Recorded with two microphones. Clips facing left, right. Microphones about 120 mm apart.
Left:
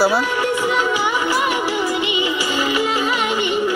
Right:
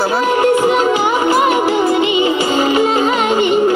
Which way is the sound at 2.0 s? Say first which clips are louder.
Right 7 dB; 35° right (ahead or behind).